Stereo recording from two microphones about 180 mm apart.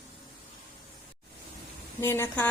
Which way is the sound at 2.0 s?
15° left (ahead or behind).